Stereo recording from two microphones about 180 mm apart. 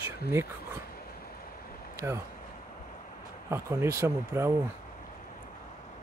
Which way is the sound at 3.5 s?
15° right (ahead or behind).